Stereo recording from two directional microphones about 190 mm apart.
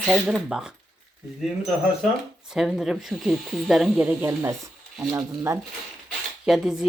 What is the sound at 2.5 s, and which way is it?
A woman's voice, centre (ahead or behind).